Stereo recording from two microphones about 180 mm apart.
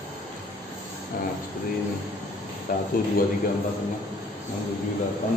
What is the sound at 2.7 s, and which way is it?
Speech, 50° left (ahead or behind).